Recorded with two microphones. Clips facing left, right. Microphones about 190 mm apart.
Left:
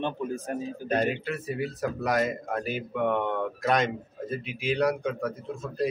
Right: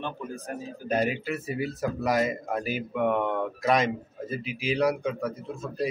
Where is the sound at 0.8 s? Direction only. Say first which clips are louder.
Right 1 dB; 5° right (ahead or behind).